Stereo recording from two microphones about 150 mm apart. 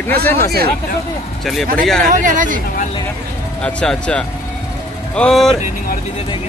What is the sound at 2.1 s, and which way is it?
Speech, 60° right (ahead or behind).